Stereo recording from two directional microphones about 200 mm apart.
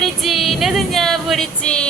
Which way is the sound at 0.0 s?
Centre (ahead or behind).